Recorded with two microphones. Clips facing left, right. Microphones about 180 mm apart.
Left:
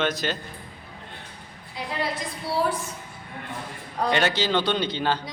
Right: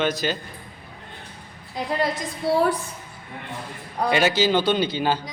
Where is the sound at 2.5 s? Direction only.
55° right (ahead or behind).